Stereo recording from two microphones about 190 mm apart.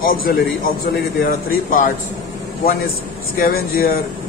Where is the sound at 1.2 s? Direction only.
50° left (ahead or behind).